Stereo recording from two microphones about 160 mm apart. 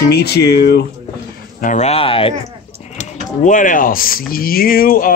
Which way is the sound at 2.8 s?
45° left (ahead or behind).